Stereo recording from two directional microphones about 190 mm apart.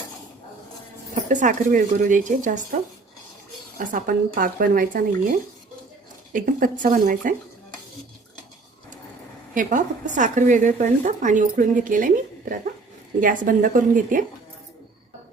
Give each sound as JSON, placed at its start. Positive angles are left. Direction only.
{"t": 1.1, "sound": "speech", "side_deg": -40}
{"t": 3.8, "sound": "speech", "side_deg": -50}
{"t": 9.6, "sound": "speech", "side_deg": -40}